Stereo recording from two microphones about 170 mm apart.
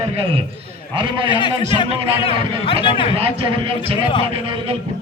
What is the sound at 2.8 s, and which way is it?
Speech, 30° left (ahead or behind).